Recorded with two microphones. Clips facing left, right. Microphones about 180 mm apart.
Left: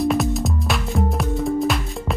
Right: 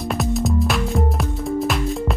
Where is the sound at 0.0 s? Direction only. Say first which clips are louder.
Left 2 dB; centre (ahead or behind).